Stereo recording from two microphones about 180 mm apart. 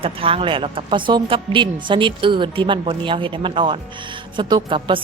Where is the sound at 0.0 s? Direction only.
30° right (ahead or behind).